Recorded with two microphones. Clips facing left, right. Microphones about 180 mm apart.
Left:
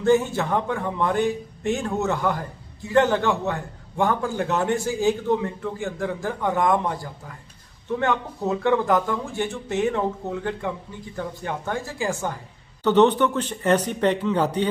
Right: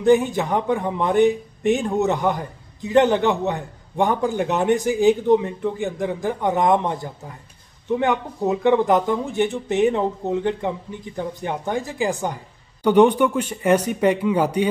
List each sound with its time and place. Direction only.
0.0 s a man's voice: 15° right (ahead or behind)